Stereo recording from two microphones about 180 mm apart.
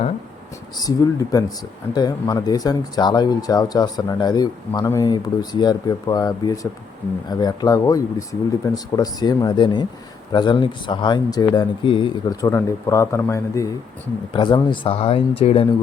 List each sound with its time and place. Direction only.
0.8 s speech: 20° left (ahead or behind)